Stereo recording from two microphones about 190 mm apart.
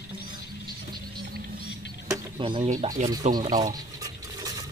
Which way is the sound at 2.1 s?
25° right (ahead or behind).